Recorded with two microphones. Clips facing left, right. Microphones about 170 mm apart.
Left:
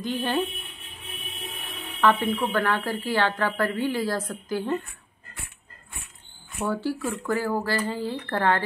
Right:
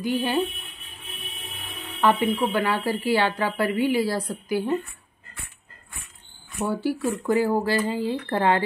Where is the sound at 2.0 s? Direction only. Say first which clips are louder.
Right 1 dB; 10° right (ahead or behind).